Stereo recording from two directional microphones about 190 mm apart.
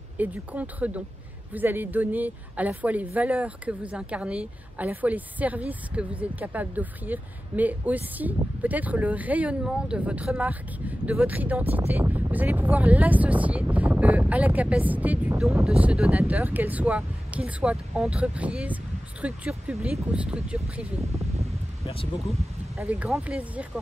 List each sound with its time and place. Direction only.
0.2 s speech: 10° right (ahead or behind)
21.0 s speech: 35° right (ahead or behind)
22.8 s speech: 5° right (ahead or behind)